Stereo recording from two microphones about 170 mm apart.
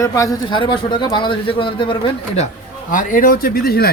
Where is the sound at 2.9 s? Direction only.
50° left (ahead or behind).